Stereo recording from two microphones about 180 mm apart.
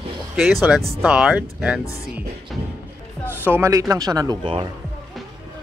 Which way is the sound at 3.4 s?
15° right (ahead or behind).